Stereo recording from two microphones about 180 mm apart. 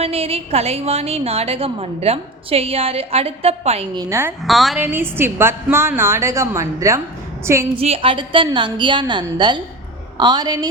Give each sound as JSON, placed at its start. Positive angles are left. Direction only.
{"t": 0.0, "sound": "a woman's voice", "side_deg": -35}
{"t": 3.9, "sound": "a woman's voice", "side_deg": -20}
{"t": 4.4, "sound": "a woman's voice", "side_deg": 0}
{"t": 4.8, "sound": "a woman's voice", "side_deg": -10}
{"t": 7.7, "sound": "a woman's voice", "side_deg": -35}